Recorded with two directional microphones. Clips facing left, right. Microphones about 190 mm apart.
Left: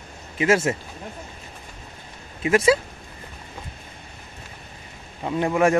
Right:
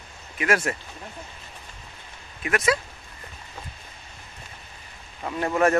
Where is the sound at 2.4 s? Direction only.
30° left (ahead or behind).